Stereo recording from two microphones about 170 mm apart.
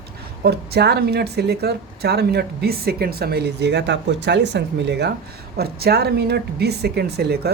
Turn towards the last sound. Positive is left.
turn(degrees=-70)  # may be behind; listen again after turning